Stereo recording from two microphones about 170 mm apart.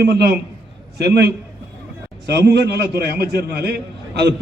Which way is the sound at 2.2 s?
80° right.